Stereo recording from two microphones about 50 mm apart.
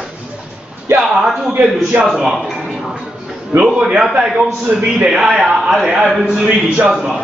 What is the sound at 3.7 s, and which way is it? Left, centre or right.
A man's voice, centre.